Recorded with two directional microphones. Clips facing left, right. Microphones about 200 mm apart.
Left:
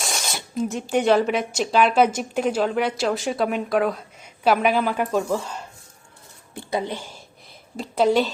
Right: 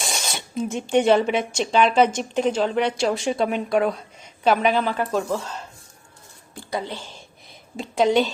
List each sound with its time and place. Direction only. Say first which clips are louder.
0.0 s a woman's voice: even; centre (ahead or behind)
6.7 s a woman's voice: left 3 dB; 20° left (ahead or behind)
7.8 s speech: even; centre (ahead or behind)